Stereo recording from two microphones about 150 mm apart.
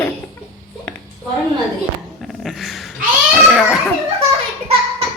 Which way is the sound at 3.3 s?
Centre (ahead or behind).